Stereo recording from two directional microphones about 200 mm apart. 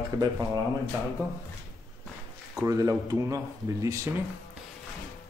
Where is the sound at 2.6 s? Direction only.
15° right (ahead or behind).